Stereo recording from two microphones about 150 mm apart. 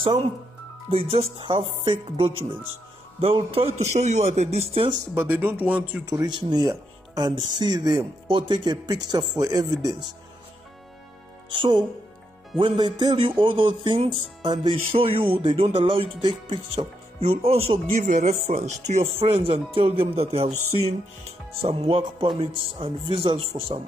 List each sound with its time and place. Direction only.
0.0 s speech: 35° right (ahead or behind)
5.1 s speech: 15° right (ahead or behind)
6.0 s speech: 30° right (ahead or behind)
11.5 s speech: 35° right (ahead or behind)
19.2 s speech: 35° right (ahead or behind)